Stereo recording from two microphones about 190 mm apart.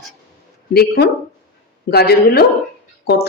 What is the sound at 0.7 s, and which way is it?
Speech, 55° left (ahead or behind).